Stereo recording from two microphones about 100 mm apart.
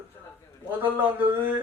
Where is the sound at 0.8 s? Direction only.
20° right (ahead or behind).